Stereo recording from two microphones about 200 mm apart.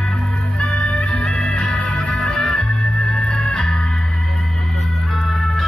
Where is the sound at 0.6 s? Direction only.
5° left (ahead or behind).